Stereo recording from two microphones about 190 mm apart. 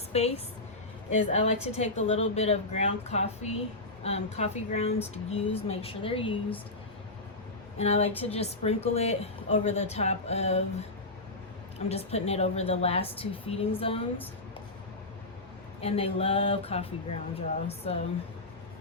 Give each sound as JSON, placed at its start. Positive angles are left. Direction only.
{"t": 0.1, "sound": "a woman's voice", "side_deg": 35}
{"t": 7.8, "sound": "a woman's voice", "side_deg": 35}
{"t": 11.9, "sound": "a woman's voice", "side_deg": 35}
{"t": 15.8, "sound": "a woman's voice", "side_deg": 30}